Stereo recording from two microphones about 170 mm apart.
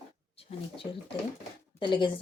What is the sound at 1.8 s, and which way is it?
Speech, 25° left (ahead or behind).